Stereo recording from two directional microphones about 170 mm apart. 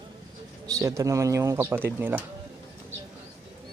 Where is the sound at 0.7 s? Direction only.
20° right (ahead or behind).